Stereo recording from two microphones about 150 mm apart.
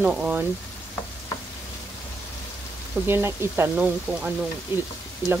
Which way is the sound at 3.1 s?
15° right (ahead or behind).